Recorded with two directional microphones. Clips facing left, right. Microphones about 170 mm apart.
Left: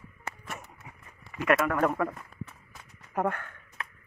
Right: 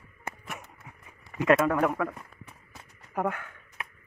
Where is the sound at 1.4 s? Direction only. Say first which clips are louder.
Right 3 dB; 25° right (ahead or behind).